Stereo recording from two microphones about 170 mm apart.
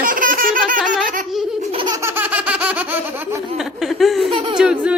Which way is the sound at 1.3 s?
Centre (ahead or behind).